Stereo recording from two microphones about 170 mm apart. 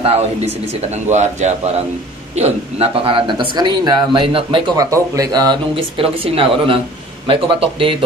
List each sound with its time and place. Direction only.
0.0 s speech: 35° right (ahead or behind)